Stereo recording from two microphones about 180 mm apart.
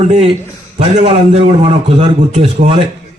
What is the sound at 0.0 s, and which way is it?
A man's voice, 40° right (ahead or behind).